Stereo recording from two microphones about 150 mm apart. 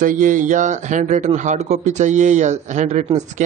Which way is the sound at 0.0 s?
65° right (ahead or behind).